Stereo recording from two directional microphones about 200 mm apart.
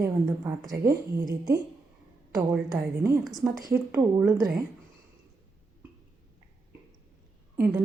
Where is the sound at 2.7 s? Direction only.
15° right (ahead or behind).